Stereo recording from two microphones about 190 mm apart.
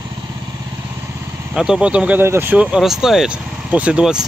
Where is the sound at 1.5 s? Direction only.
5° right (ahead or behind).